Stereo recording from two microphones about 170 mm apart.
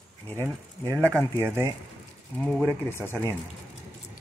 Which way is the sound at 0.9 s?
15° right (ahead or behind).